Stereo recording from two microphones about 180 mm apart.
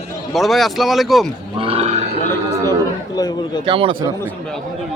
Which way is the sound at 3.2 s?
20° left (ahead or behind).